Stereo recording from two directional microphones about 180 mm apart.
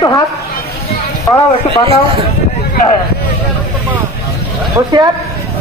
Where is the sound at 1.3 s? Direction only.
20° left (ahead or behind).